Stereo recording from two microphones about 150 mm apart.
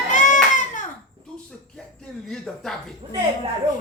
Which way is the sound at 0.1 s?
55° left (ahead or behind).